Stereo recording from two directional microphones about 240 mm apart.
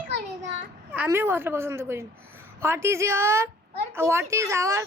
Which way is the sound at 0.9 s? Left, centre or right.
Centre.